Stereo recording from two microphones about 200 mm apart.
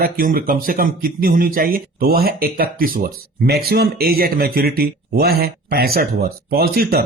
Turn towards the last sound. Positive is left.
turn(degrees=-50)  # may be behind; listen again after turning